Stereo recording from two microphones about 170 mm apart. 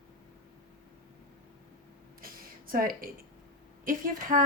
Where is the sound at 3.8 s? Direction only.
55° right (ahead or behind).